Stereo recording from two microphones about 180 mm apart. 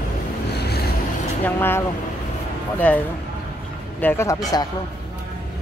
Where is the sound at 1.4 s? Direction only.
10° left (ahead or behind).